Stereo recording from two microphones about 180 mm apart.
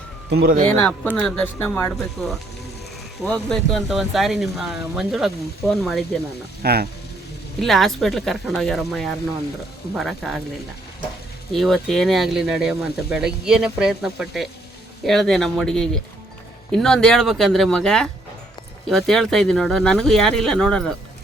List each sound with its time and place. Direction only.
0.3 s speech: 60° right (ahead or behind)
0.8 s speech: 10° left (ahead or behind)
6.6 s speech: 60° right (ahead or behind)
7.6 s speech: centre (ahead or behind)
11.5 s speech: centre (ahead or behind)